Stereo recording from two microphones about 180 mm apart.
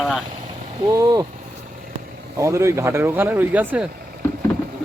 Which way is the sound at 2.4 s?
15° right (ahead or behind).